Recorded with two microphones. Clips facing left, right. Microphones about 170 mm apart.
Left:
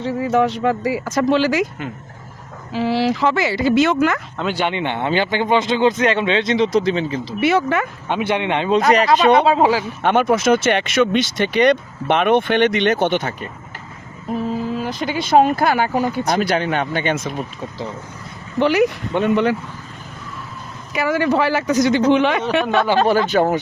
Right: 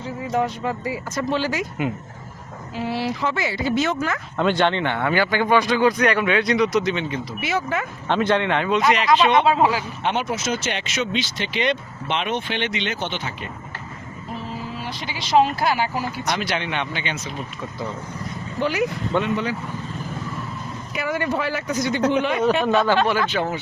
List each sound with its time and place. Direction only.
0.0 s speech: 80° left
2.7 s speech: 90° left
4.4 s a man's voice: 5° left (ahead or behind); by 7.2 s 30° left (ahead or behind)
7.3 s speech: 65° left (ahead or behind)
8.0 s speech: 10° left (ahead or behind)
8.7 s speech: 40° left (ahead or behind)
10.0 s speech: 50° left (ahead or behind)
14.8 s speech: 45° left (ahead or behind)
16.5 s speech: 40° left (ahead or behind)
18.6 s speech: 75° left (ahead or behind)
20.9 s speech: 90° left
23.0 s speech: 40° left (ahead or behind)